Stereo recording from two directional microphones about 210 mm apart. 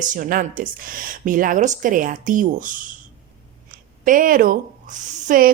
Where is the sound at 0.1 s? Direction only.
40° right (ahead or behind).